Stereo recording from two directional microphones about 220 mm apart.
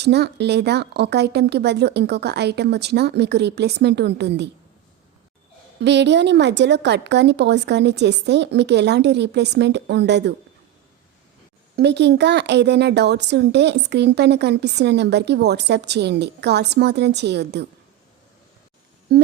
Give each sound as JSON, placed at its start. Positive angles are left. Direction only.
{"t": 0.0, "sound": "speech", "side_deg": -50}
{"t": 5.8, "sound": "speech", "side_deg": -50}
{"t": 11.8, "sound": "speech", "side_deg": -50}
{"t": 19.1, "sound": "speech", "side_deg": -45}